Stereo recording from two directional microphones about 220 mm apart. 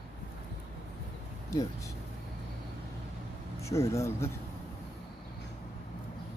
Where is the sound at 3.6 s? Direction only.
15° left (ahead or behind).